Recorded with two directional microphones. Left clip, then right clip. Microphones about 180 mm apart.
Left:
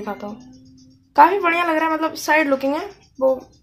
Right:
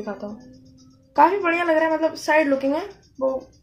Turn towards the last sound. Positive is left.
turn(degrees=15)  # may be behind; listen again after turning